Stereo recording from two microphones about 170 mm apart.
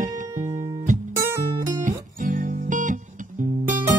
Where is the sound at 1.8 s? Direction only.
50° right (ahead or behind).